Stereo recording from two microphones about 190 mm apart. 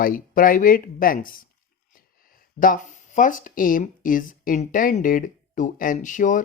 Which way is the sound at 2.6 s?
45° left (ahead or behind).